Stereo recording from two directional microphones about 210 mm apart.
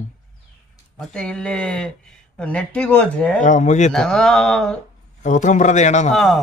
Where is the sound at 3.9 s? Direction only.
Centre (ahead or behind).